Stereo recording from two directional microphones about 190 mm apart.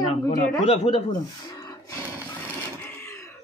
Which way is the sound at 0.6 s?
35° left (ahead or behind).